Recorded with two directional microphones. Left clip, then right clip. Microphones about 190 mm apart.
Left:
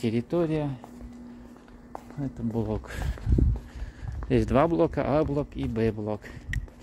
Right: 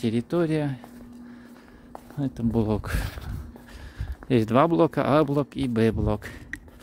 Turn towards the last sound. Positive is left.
turn(degrees=-40)  # may be behind; listen again after turning